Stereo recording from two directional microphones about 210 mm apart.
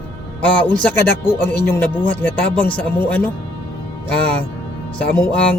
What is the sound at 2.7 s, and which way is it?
Speech, 5° left (ahead or behind).